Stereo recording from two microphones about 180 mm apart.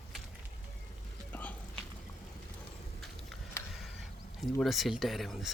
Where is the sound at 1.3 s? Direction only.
10° left (ahead or behind).